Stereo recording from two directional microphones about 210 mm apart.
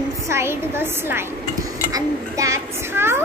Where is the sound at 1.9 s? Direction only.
15° right (ahead or behind).